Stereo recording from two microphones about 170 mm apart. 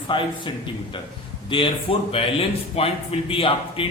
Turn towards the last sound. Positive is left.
turn(degrees=30)  # may be behind; listen again after turning